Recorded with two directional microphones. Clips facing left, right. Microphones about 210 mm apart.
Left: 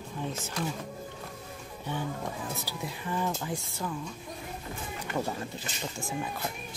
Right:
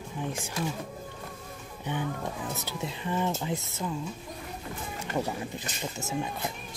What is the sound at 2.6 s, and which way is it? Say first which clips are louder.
Speech: right 2 dB; 25° right (ahead or behind).